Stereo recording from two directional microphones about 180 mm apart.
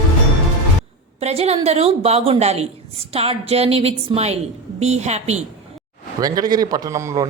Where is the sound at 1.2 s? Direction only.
35° right (ahead or behind).